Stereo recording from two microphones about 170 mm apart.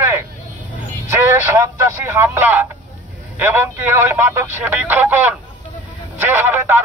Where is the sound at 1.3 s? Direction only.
15° right (ahead or behind).